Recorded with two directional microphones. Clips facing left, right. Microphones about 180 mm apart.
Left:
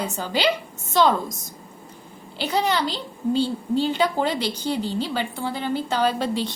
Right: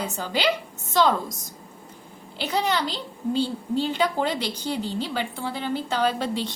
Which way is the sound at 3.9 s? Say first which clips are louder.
Left 2 dB; 30° left (ahead or behind).